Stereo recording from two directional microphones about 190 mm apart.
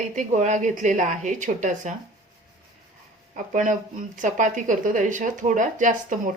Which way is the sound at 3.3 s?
40° right (ahead or behind).